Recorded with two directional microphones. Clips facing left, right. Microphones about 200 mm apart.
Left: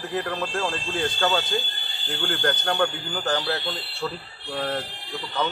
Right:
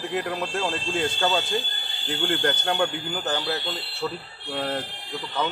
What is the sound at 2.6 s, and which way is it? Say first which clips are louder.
Speech: even; 10° right (ahead or behind).